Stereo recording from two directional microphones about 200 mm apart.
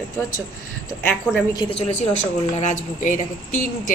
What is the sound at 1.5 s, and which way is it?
A woman's voice, 25° left (ahead or behind).